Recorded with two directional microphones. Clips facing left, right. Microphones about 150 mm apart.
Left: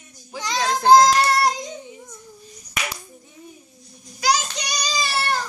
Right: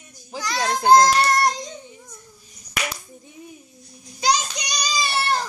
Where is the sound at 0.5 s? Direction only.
15° right (ahead or behind).